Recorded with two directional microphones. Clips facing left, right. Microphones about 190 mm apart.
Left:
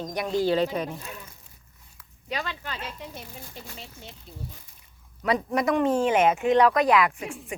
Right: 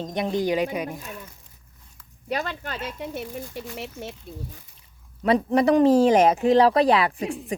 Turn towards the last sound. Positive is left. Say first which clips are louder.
# right 4 dB
turn(degrees=-35)  # may be behind; listen again after turning